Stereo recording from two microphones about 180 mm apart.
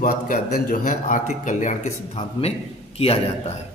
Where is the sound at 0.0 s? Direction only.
50° left (ahead or behind).